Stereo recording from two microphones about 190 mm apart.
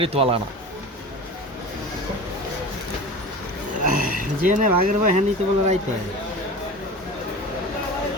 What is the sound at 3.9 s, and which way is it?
A man's voice, 45° right (ahead or behind).